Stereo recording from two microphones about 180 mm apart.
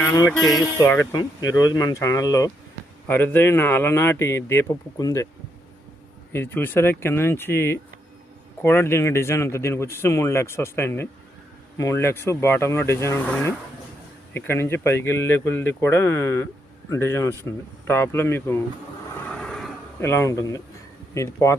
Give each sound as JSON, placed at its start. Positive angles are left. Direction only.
{"t": 0.0, "sound": "music", "side_deg": 20}
{"t": 0.3, "sound": "music", "side_deg": 0}
{"t": 0.8, "sound": "speech", "side_deg": 15}
{"t": 6.3, "sound": "speech", "side_deg": 10}
{"t": 19.2, "sound": "a sound", "side_deg": 5}
{"t": 20.0, "sound": "speech", "side_deg": 15}